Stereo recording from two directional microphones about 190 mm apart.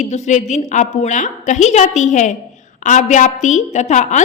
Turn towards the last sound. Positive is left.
turn(degrees=40)  # may be behind; listen again after turning